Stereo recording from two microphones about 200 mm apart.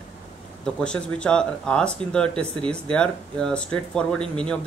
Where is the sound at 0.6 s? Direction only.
5° left (ahead or behind).